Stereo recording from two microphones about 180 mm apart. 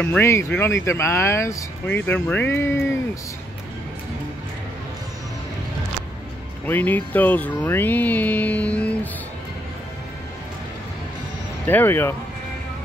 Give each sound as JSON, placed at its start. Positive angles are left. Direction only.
{"t": 0.0, "sound": "speech", "side_deg": 10}
{"t": 6.6, "sound": "speech", "side_deg": 10}
{"t": 11.6, "sound": "speech", "side_deg": 10}